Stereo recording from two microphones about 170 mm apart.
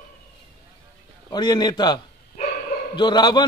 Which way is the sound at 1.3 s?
25° left (ahead or behind).